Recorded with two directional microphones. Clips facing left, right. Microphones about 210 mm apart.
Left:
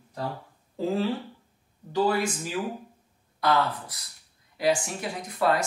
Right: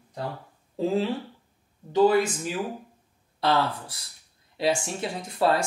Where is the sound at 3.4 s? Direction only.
30° right (ahead or behind).